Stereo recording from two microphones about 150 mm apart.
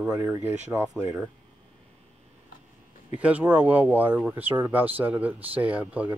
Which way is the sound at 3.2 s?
10° right (ahead or behind).